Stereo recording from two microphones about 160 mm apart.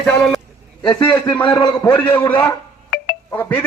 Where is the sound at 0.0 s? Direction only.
5° left (ahead or behind).